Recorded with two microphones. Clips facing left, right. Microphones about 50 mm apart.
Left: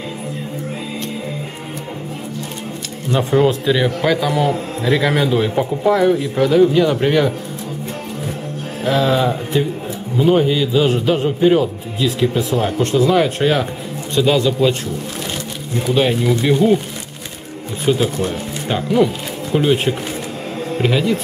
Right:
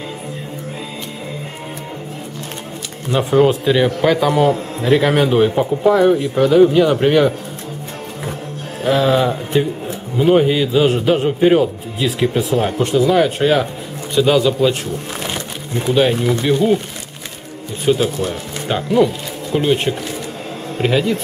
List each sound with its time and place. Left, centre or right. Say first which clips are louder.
3.1 s a man's voice: right 1 dB; centre
4.3 s a man's voice: right 3 dB; right
5.5 s speech: right 2 dB; centre
6.3 s a man's voice: right 2 dB; centre
8.8 s a man's voice: right 1 dB; centre
15.9 s speech: right 1 dB; centre
17.8 s speech: right 1 dB; centre